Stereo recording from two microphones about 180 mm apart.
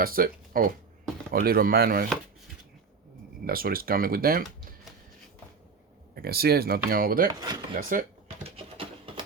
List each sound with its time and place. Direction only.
0.0 s speech: 50° right (ahead or behind)
3.4 s speech: 55° right (ahead or behind)
6.1 s speech: 60° right (ahead or behind)
6.9 s chopping: 55° right (ahead or behind)
7.3 s speech: 20° right (ahead or behind)
7.8 s chopping: 50° right (ahead or behind)
8.4 s a sound: 30° right (ahead or behind)